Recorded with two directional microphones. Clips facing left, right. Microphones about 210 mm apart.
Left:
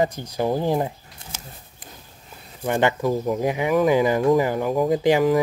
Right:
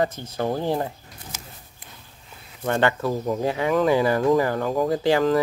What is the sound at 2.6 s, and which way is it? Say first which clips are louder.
Speech: left 1 dB; 15° left (ahead or behind).